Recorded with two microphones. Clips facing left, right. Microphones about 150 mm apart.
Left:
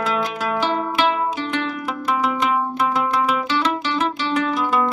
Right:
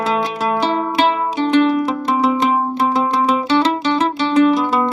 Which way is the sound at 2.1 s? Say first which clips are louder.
Right 4 dB; 35° right (ahead or behind).